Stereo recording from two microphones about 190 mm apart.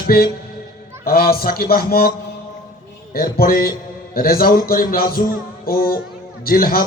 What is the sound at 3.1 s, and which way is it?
Speech, 50° left (ahead or behind).